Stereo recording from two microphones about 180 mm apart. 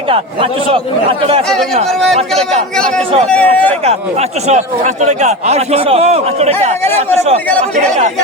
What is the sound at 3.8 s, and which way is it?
A man's voice, 35° right (ahead or behind).